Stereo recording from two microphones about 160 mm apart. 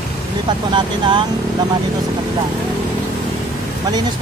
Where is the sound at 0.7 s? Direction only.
30° right (ahead or behind).